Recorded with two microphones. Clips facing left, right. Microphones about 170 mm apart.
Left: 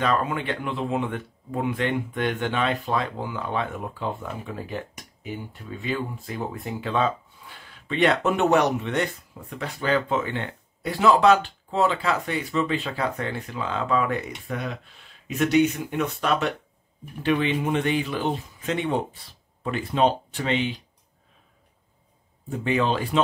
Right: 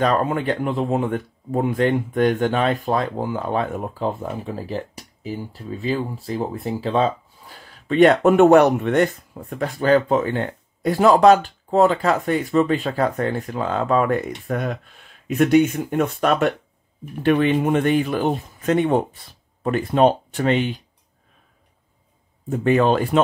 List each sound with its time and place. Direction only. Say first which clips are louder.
0.0 s speech: right 5 dB; 45° right (ahead or behind)
22.5 s speech: right 7 dB; 50° right (ahead or behind)